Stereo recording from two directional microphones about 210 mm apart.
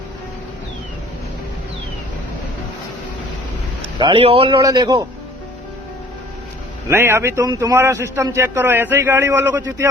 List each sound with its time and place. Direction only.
3.9 s a man's voice: 25° right (ahead or behind)
6.8 s a man's voice: 10° right (ahead or behind)